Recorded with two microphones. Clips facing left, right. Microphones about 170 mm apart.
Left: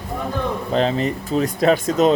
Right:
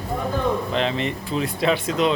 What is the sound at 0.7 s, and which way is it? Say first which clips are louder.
Speech: left 4 dB; 40° left (ahead or behind).